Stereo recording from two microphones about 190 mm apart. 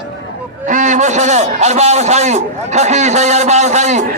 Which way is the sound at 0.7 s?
40° right (ahead or behind).